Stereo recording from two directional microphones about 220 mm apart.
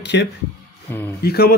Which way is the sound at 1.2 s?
45° left (ahead or behind).